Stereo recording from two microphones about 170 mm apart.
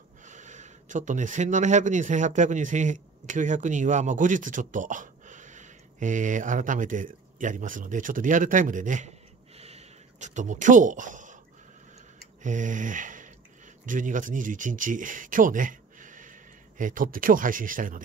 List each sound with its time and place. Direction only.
0.2 s speech: 45° right (ahead or behind)
9.6 s a sound: 40° right (ahead or behind)
13.8 s speech: 50° right (ahead or behind)